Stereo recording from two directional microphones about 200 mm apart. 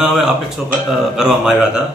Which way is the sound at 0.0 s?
Centre (ahead or behind).